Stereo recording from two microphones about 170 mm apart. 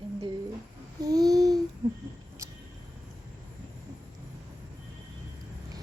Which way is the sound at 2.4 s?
15° right (ahead or behind).